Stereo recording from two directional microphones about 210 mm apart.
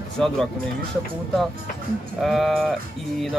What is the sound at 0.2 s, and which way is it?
Speech, centre (ahead or behind).